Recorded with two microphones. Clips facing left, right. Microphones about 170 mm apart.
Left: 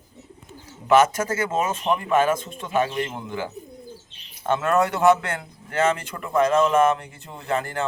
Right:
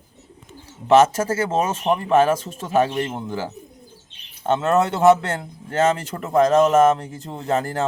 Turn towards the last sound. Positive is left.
turn(degrees=-35)  # may be behind; listen again after turning